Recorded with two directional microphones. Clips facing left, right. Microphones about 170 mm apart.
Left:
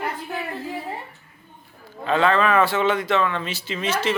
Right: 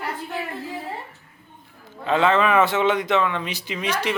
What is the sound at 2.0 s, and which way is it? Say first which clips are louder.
A man's voice: even; 20° right (ahead or behind).